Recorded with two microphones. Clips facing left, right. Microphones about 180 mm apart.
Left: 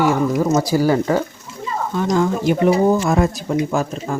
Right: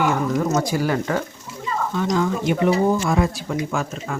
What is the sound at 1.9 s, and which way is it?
Speech, 45° left (ahead or behind).